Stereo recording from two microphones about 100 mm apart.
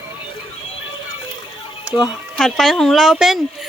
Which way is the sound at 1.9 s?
10° right (ahead or behind).